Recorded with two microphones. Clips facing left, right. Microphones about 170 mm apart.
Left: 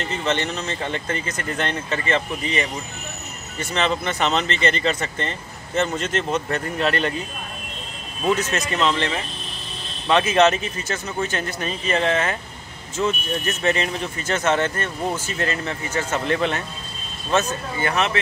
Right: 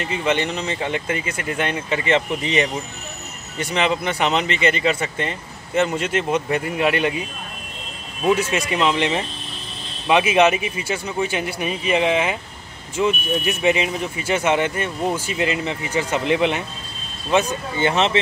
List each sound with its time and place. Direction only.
0.0 s speech: 10° right (ahead or behind)
8.3 s speech: 10° right (ahead or behind)
17.7 s speech: 25° right (ahead or behind)